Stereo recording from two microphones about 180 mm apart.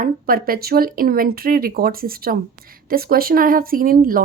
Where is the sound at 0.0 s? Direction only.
55° right (ahead or behind).